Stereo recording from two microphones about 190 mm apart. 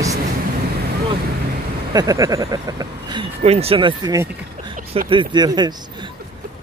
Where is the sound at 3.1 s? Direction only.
30° right (ahead or behind).